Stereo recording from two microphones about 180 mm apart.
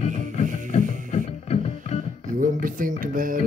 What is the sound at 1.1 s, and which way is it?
Music, 35° left (ahead or behind).